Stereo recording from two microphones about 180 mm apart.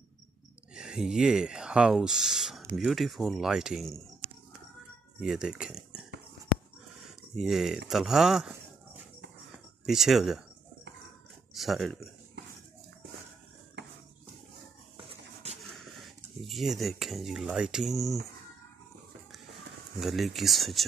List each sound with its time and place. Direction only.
0.7 s speech: 5° right (ahead or behind)
5.2 s speech: 5° right (ahead or behind)
7.3 s speech: centre (ahead or behind)
9.8 s speech: centre (ahead or behind)
11.5 s speech: centre (ahead or behind)
15.0 s a sound: 30° right (ahead or behind)
16.3 s speech: centre (ahead or behind)
20.0 s speech: centre (ahead or behind)